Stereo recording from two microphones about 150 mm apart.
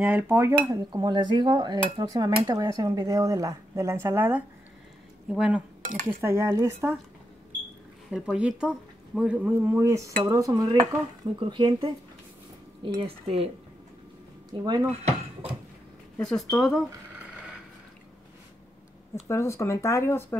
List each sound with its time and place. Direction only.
0.0 s cutlery: 15° right (ahead or behind)
0.6 s dishes: 25° right (ahead or behind)
5.3 s speech: 5° right (ahead or behind)
6.2 s cutlery: 20° right (ahead or behind)
8.1 s cutlery: 5° right (ahead or behind)
10.2 s dishes: 20° right (ahead or behind)
11.3 s speech: 30° right (ahead or behind)
14.6 s dishes: 25° right (ahead or behind)
16.2 s speech: 5° left (ahead or behind)
19.2 s speech: 20° left (ahead or behind)